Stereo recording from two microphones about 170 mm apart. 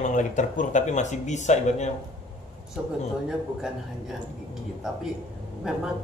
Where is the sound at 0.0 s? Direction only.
45° left (ahead or behind).